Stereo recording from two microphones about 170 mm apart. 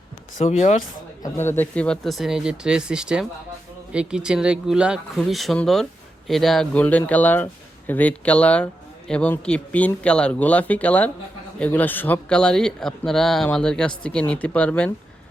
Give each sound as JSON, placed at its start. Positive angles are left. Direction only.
{"t": 0.4, "sound": "speech", "side_deg": 45}
{"t": 1.2, "sound": "speech", "side_deg": 15}